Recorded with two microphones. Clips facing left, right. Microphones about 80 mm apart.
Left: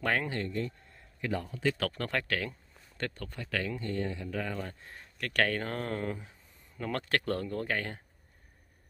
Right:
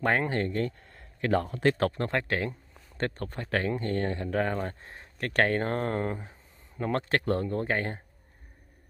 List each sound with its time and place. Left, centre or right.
0.0 s speech: right
0.3 s speech: right
1.8 s speech: right